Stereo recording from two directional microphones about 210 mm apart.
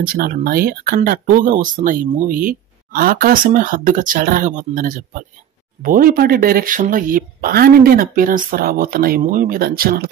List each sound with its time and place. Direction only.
0.0 s speech: 45° right (ahead or behind)